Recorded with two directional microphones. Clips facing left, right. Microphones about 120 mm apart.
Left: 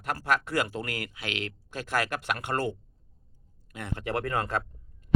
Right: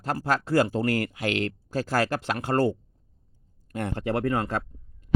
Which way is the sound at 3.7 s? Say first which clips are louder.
Right 9 dB; 45° right (ahead or behind).